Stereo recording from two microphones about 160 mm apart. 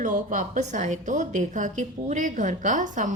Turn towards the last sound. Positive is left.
turn(degrees=-50)  # may be behind; listen again after turning